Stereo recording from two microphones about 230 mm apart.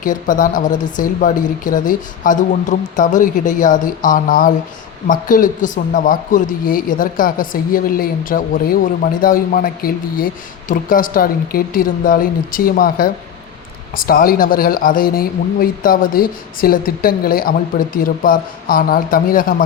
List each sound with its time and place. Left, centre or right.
0.0 s speech: left